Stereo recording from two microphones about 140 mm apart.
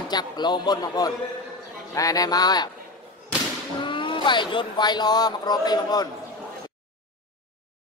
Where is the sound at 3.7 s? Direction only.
35° left (ahead or behind).